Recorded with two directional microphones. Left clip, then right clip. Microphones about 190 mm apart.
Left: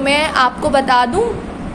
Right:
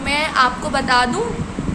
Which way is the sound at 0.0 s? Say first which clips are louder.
Left 3 dB; 25° left (ahead or behind).